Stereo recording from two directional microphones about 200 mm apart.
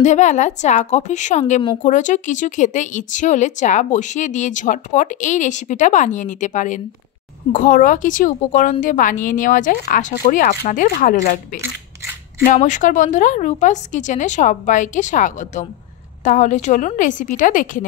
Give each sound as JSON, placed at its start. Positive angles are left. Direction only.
{"t": 0.0, "sound": "speech", "side_deg": 35}
{"t": 12.4, "sound": "speech", "side_deg": 40}